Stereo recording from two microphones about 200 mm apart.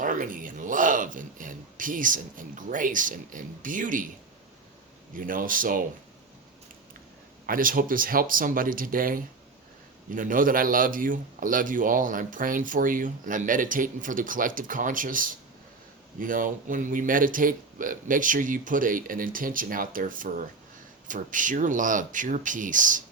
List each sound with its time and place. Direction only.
0.0 s speech: 40° right (ahead or behind)
5.1 s a man's voice: 45° right (ahead or behind)
7.4 s a man's voice: 45° right (ahead or behind)